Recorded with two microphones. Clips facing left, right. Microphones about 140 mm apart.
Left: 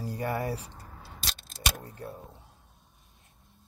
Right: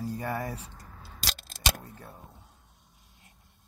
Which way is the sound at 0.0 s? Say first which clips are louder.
Left 1 dB; 10° left (ahead or behind).